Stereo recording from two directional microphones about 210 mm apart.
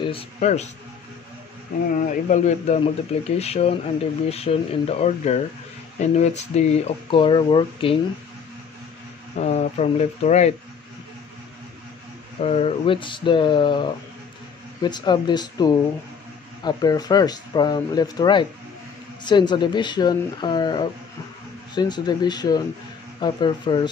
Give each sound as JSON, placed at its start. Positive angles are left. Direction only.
{"t": 0.0, "sound": "a man's voice", "side_deg": 30}
{"t": 2.0, "sound": "speech", "side_deg": 35}
{"t": 9.4, "sound": "speech", "side_deg": 30}
{"t": 12.4, "sound": "speech", "side_deg": 30}